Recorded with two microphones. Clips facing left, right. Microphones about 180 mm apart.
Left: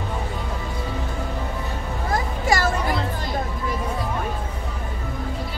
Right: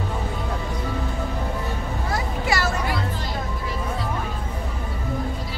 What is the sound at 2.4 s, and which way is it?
Music, 45° left (ahead or behind).